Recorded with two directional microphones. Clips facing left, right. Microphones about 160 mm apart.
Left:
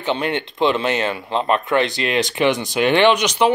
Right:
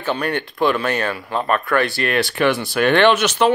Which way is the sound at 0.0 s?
20° left (ahead or behind).